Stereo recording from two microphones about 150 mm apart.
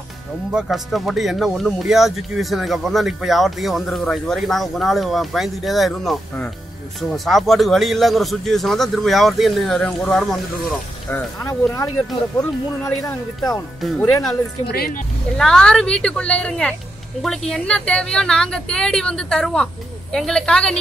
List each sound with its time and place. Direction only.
0.5 s a woman's voice: 5° right (ahead or behind); by 11.7 s 10° left (ahead or behind)
13.9 s a woman's voice: 15° left (ahead or behind)
14.7 s speech: 90° left
15.3 s a woman's voice: 5° left (ahead or behind)